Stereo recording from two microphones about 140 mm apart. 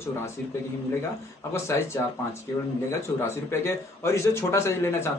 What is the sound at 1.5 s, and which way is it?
Speech, 20° left (ahead or behind).